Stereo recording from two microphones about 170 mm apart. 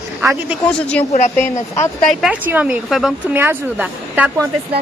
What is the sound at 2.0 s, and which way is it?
Speech, 5° left (ahead or behind).